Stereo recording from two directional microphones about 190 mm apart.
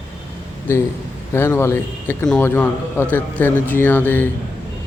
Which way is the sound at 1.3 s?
10° left (ahead or behind).